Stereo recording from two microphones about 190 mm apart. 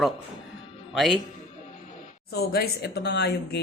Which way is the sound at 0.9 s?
Centre (ahead or behind).